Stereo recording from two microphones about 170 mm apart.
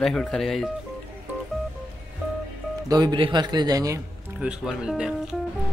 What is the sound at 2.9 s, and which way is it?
A man's voice, 25° right (ahead or behind).